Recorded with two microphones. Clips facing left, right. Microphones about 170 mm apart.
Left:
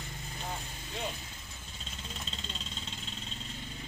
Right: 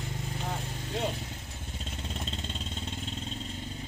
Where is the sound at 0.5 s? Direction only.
65° right (ahead or behind); by 3.3 s 50° right (ahead or behind).